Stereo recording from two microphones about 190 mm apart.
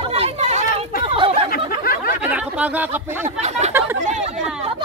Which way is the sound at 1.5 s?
50° left (ahead or behind).